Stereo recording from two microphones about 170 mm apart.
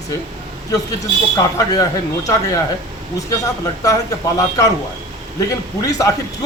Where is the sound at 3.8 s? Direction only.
20° left (ahead or behind).